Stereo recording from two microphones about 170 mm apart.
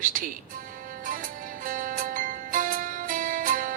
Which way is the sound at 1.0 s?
50° right (ahead or behind).